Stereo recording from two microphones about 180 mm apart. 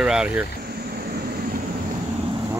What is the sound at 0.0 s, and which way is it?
Speech, 5° right (ahead or behind).